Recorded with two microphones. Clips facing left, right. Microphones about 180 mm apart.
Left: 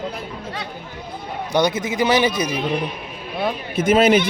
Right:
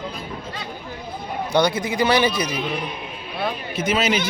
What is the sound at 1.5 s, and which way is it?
Speech, 20° left (ahead or behind).